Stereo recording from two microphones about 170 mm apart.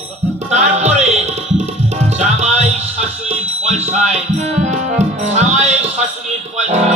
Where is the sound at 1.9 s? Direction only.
40° right (ahead or behind).